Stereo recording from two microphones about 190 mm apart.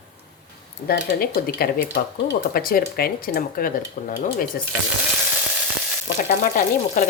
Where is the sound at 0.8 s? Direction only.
50° left (ahead or behind).